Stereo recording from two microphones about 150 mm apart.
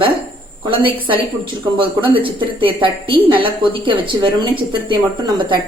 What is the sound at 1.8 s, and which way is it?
A woman's voice, 35° right (ahead or behind).